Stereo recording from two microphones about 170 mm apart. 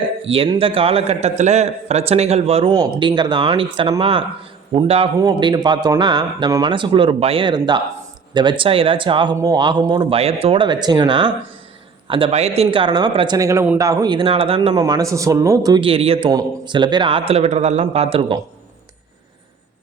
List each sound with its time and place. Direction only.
0.2 s a man's voice: 35° right (ahead or behind)
14.8 s a man's voice: 20° right (ahead or behind)